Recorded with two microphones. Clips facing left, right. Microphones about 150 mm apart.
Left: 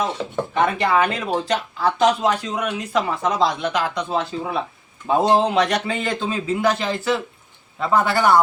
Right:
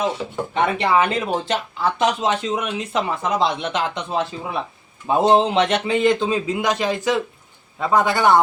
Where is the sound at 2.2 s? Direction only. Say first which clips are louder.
Even; 25° right (ahead or behind).